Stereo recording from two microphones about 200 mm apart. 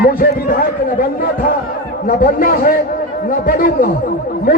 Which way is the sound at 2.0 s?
45° left (ahead or behind).